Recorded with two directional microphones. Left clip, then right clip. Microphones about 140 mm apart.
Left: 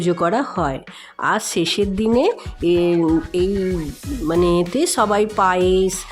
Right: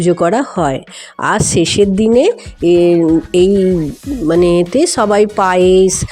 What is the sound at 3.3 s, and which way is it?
Speech, 40° right (ahead or behind).